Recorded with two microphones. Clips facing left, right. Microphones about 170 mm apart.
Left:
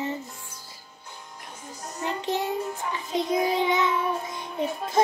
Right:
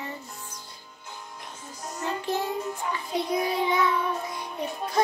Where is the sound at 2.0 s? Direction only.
20° left (ahead or behind).